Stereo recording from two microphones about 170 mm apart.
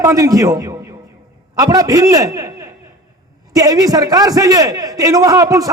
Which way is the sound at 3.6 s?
20° right (ahead or behind).